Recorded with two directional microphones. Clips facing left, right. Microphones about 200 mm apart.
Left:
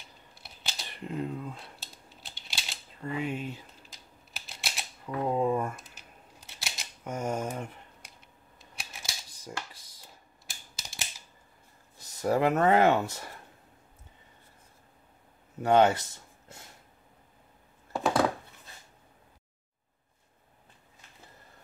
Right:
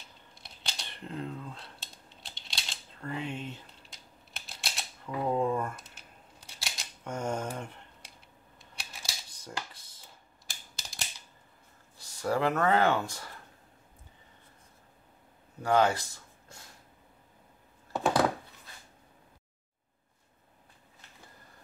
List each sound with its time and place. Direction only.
0.3 s camera: 5° left (ahead or behind)
4.6 s typewriter: centre (ahead or behind)
5.3 s speech: 10° left (ahead or behind)
6.6 s scissors: 5° left (ahead or behind)
10.5 s computer keyboard: centre (ahead or behind)
12.2 s speech: 20° left (ahead or behind)
15.6 s speech: 25° left (ahead or behind)
17.9 s a sound: centre (ahead or behind)